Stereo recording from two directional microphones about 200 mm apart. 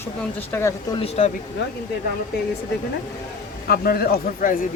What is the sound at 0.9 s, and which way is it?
Speech, 30° left (ahead or behind).